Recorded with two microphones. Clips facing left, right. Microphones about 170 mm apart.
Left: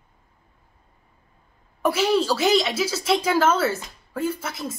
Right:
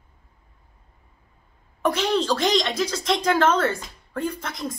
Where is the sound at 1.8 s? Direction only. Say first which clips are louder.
Left 2 dB; 5° left (ahead or behind).